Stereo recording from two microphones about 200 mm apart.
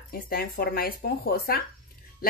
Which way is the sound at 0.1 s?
50° left (ahead or behind).